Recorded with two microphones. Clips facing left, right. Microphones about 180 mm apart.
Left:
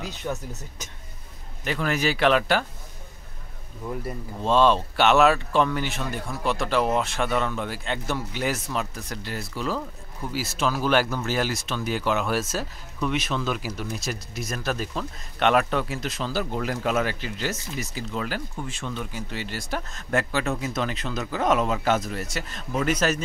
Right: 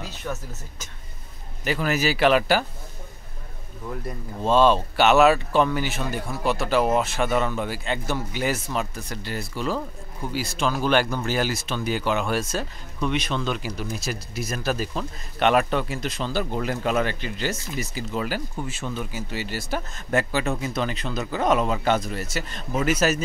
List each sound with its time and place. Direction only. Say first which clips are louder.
0.0 s speech: left 1 dB; 15° left (ahead or behind)
1.6 s speech: right 2 dB; 5° right (ahead or behind)
3.8 s speech: left 1 dB; 10° left (ahead or behind)
4.4 s speech: right 2 dB; 5° right (ahead or behind)